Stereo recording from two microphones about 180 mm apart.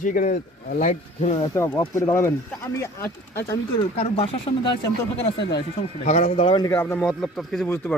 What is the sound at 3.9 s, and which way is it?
Speech, 35° left (ahead or behind).